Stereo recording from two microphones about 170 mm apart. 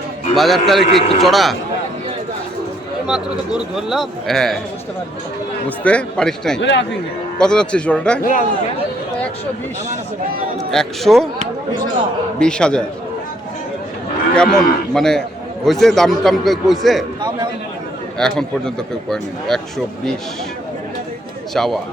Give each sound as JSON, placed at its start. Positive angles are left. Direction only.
{"t": 0.3, "sound": "a man's voice", "side_deg": 0}
{"t": 3.1, "sound": "a man's voice", "side_deg": -5}
{"t": 5.6, "sound": "a man's voice", "side_deg": 5}
{"t": 6.6, "sound": "speech", "side_deg": 90}
{"t": 7.3, "sound": "a man's voice", "side_deg": 5}
{"t": 8.2, "sound": "speech", "side_deg": 50}
{"t": 10.7, "sound": "a man's voice", "side_deg": 0}
{"t": 12.4, "sound": "a man's voice", "side_deg": 5}
{"t": 14.3, "sound": "a man's voice", "side_deg": 5}
{"t": 18.2, "sound": "a man's voice", "side_deg": 5}
{"t": 21.5, "sound": "a man's voice", "side_deg": 0}